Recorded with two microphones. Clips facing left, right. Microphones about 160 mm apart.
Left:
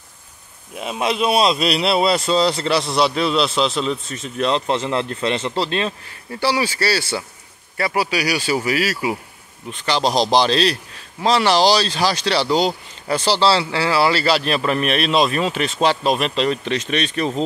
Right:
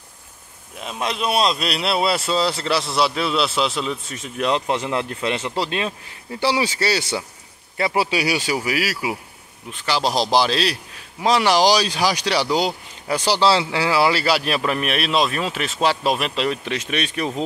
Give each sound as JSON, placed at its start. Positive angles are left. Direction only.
{"t": 0.7, "sound": "speech", "side_deg": 5}
{"t": 8.5, "sound": "a man's voice", "side_deg": -10}